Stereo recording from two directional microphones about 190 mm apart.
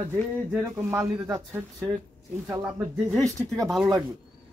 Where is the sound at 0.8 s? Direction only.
15° right (ahead or behind).